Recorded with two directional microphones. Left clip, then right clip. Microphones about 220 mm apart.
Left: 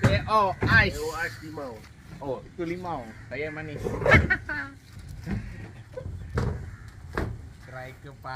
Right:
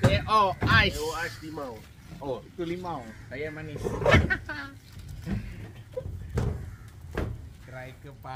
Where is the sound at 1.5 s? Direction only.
20° right (ahead or behind).